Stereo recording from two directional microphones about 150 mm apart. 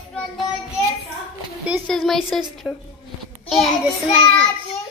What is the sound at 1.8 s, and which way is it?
Speech, centre (ahead or behind).